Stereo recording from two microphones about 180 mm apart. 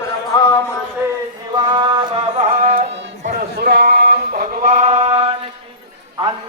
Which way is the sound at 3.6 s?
60° right (ahead or behind).